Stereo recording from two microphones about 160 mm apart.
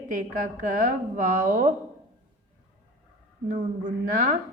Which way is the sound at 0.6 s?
55° right (ahead or behind).